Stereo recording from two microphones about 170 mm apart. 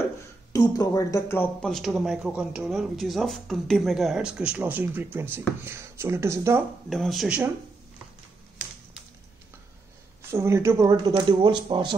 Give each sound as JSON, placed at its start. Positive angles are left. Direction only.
{"t": 0.5, "sound": "speech", "side_deg": 20}
{"t": 6.9, "sound": "speech", "side_deg": 0}
{"t": 10.3, "sound": "speech", "side_deg": -15}